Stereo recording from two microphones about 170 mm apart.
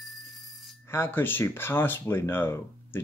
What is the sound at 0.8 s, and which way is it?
Speech, 15° left (ahead or behind).